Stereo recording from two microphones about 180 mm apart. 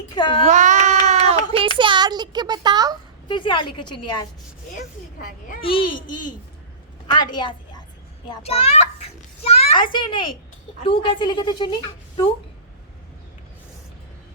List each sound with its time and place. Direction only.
0.1 s a woman's voice: 25° left (ahead or behind)
0.4 s a sound: 40° right (ahead or behind)
1.8 s a sound: 25° right (ahead or behind)
3.2 s a woman's voice: 25° left (ahead or behind)
5.5 s a woman's voice: 30° left (ahead or behind)
8.3 s children playing: 35° left (ahead or behind)
9.9 s a woman's voice: 25° left (ahead or behind)